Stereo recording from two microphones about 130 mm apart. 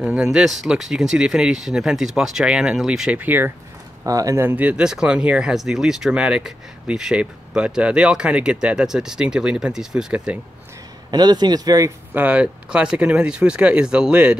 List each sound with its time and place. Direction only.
0.0 s speech: 5° right (ahead or behind)
4.0 s speech: 25° right (ahead or behind); by 10.4 s 10° right (ahead or behind)
11.1 s speech: 35° right (ahead or behind)
12.1 s speech: 10° right (ahead or behind)